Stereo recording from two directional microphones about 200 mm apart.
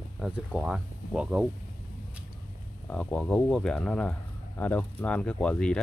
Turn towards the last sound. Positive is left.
turn(degrees=5)  # may be behind; listen again after turning